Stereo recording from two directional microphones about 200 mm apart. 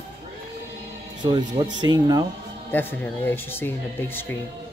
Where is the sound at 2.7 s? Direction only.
10° left (ahead or behind).